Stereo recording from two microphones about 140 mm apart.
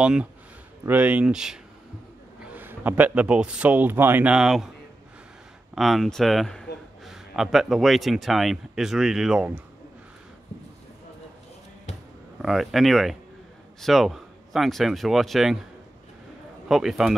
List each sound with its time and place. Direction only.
0.0 s speech: 5° right (ahead or behind)
5.8 s a man's voice: centre (ahead or behind)
12.4 s speech: centre (ahead or behind)
16.6 s speech: centre (ahead or behind)